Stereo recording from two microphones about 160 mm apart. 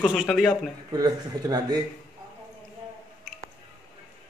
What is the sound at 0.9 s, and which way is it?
Speech, 25° right (ahead or behind).